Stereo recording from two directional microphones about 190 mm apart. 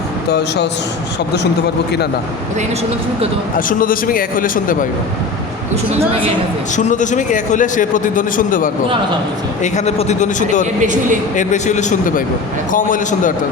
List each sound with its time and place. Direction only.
0.3 s speech: 60° left (ahead or behind)
3.7 s a man's voice: 45° left (ahead or behind)
6.7 s a man's voice: 40° left (ahead or behind)
9.7 s a man's voice: 35° left (ahead or behind)
10.8 s speech: 40° right (ahead or behind)
11.3 s a man's voice: 40° left (ahead or behind)